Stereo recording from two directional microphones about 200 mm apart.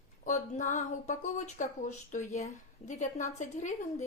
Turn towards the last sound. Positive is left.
turn(degrees=40)  # may be behind; listen again after turning